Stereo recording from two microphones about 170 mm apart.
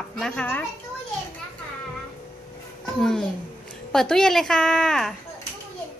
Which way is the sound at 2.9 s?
5° left (ahead or behind).